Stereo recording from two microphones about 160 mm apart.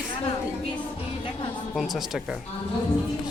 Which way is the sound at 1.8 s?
Centre (ahead or behind).